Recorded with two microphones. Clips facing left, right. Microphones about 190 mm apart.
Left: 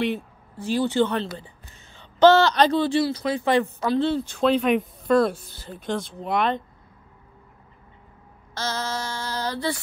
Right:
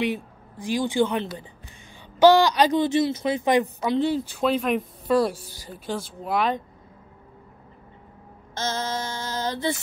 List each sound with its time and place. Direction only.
0.0 s speech: 10° right (ahead or behind)
8.5 s mantra: 20° right (ahead or behind)